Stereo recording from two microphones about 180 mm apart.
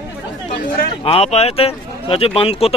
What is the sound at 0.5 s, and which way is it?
Chatter, 50° left (ahead or behind).